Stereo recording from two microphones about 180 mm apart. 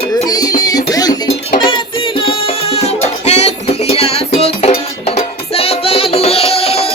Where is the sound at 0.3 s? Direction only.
20° left (ahead or behind).